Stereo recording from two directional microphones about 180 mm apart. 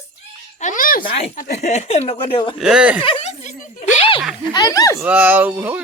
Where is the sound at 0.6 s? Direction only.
45° left (ahead or behind).